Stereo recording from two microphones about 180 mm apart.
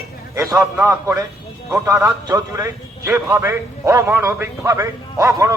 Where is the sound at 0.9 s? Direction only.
15° right (ahead or behind).